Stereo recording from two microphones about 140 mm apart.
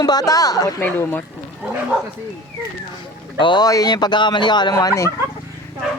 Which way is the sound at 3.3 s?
35° left (ahead or behind).